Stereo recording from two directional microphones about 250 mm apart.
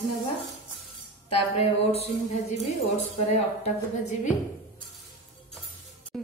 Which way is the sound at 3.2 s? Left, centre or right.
Left.